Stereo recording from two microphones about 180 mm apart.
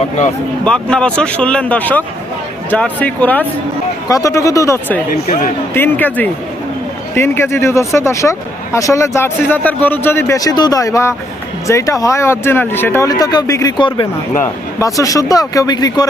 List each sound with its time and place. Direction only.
0.6 s speech: 5° left (ahead or behind); by 16.0 s 20° left (ahead or behind)